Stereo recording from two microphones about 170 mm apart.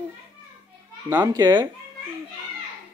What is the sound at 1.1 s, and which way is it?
Speech, 20° right (ahead or behind).